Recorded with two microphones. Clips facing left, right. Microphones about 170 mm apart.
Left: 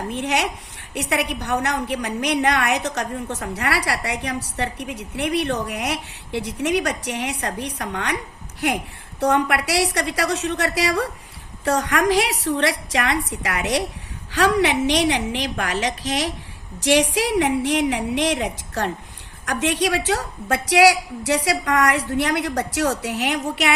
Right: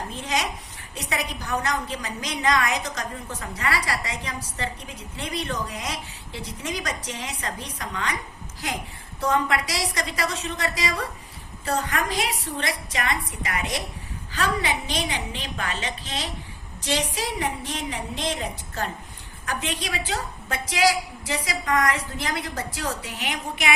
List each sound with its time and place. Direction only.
0.1 s a woman's voice: 70° left (ahead or behind)
11.6 s a woman's voice: 80° left